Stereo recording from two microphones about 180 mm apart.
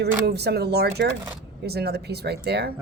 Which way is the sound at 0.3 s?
65° right (ahead or behind).